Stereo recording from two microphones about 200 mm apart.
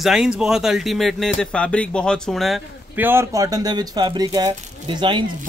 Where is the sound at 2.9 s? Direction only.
10° right (ahead or behind).